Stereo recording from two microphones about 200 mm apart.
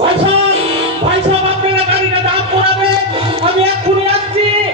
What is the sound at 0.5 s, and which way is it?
Music, 30° right (ahead or behind).